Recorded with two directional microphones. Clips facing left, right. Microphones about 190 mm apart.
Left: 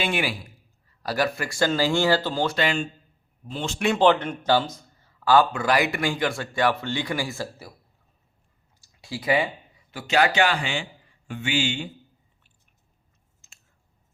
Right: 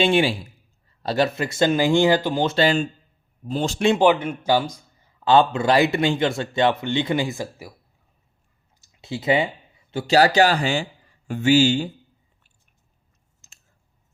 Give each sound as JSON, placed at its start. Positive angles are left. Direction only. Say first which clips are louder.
{"t": 0.0, "sound": "a man's voice", "louder": "right 8 dB", "side_deg": -25}
{"t": 2.6, "sound": "speech", "louder": "right 6 dB", "side_deg": -35}
{"t": 3.9, "sound": "a man's voice", "louder": "right 2 dB", "side_deg": -10}
{"t": 8.8, "sound": "a sound", "louder": "right 4 dB", "side_deg": -20}
{"t": 9.9, "sound": "speech", "louder": "right 5 dB", "side_deg": -35}
{"t": 13.4, "sound": "a sound", "louder": "right 2 dB", "side_deg": -40}